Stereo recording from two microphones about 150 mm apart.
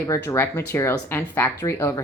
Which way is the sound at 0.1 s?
15° left (ahead or behind).